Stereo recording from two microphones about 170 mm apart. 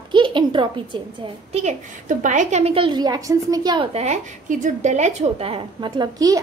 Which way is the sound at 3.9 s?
40° right (ahead or behind).